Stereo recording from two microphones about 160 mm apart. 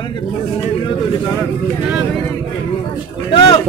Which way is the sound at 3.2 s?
30° left (ahead or behind).